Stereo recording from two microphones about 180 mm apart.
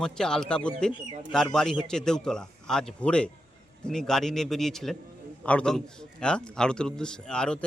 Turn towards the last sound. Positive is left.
turn(degrees=5)  # may be behind; listen again after turning